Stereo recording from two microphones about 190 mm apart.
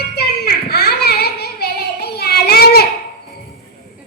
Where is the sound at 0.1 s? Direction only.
55° left (ahead or behind).